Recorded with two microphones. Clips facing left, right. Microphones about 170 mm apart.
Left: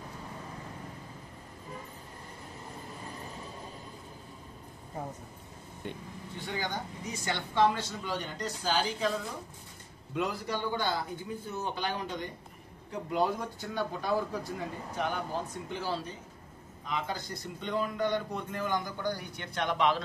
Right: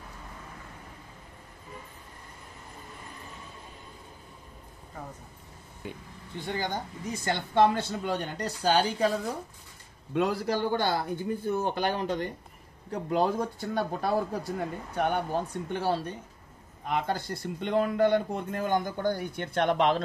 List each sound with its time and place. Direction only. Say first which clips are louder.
5.8 s speech: even; 5° right (ahead or behind)
6.4 s a woman's voice: right 4 dB; 50° right (ahead or behind)
10.1 s a woman's voice: right 6 dB; 50° right (ahead or behind)
12.9 s a man's voice: right 4 dB; 45° right (ahead or behind)
13.7 s a woman's voice: right 3 dB; 65° right (ahead or behind)